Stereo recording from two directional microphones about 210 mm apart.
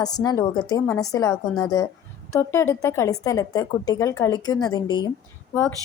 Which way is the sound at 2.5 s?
15° left (ahead or behind).